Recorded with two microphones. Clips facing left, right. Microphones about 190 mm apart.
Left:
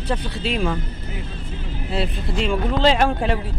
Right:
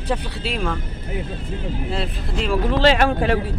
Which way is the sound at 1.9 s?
Centre (ahead or behind).